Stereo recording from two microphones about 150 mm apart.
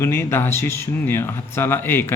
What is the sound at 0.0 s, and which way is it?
Speech, 15° left (ahead or behind).